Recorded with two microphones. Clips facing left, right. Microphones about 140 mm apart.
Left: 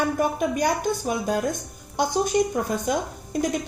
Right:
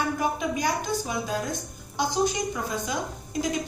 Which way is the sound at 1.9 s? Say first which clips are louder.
Left 4 dB; 55° left (ahead or behind).